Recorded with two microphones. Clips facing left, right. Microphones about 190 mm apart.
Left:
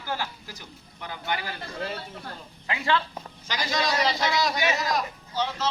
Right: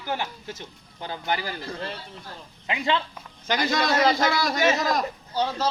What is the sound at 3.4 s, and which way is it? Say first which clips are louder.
A man's voice: right 4 dB; 55° right (ahead or behind).